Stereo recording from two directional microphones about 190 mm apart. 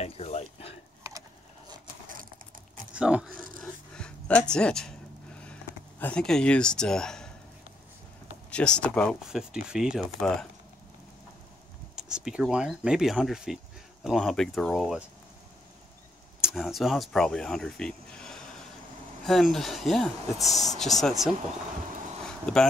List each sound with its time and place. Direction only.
0.0 s a sound: 35° left (ahead or behind)
2.9 s speech: 5° right (ahead or behind)
3.6 s a sound: 5° left (ahead or behind)
8.5 s speech: 5° left (ahead or behind)
11.9 s speech: 5° right (ahead or behind)
16.3 s speech: centre (ahead or behind)
22.2 s vehicle: 5° left (ahead or behind)